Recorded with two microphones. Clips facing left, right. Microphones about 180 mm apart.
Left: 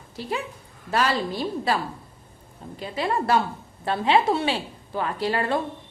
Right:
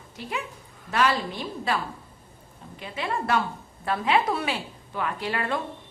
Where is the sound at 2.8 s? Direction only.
35° left (ahead or behind).